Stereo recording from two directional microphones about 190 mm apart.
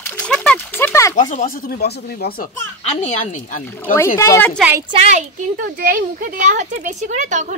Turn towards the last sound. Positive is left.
turn(degrees=-40)  # may be behind; listen again after turning